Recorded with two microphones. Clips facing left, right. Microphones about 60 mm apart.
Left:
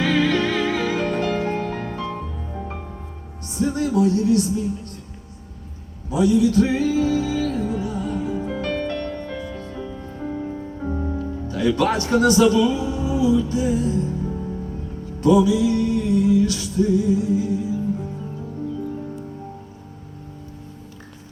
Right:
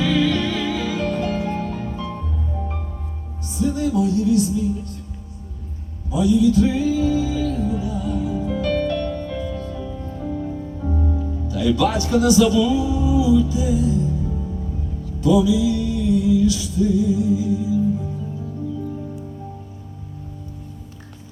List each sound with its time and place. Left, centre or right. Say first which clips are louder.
0.0 s music: even; left
2.1 s music: right 1 dB; left
3.4 s speech: right 1 dB; left
6.1 s music: right 1 dB; left
11.4 s music: even; left
15.2 s music: left 1 dB; left